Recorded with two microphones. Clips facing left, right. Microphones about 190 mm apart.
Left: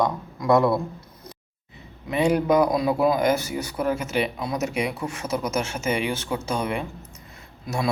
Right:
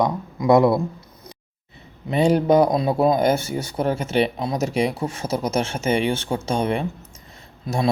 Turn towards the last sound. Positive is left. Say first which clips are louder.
# right 4 dB
turn(degrees=-25)  # may be behind; listen again after turning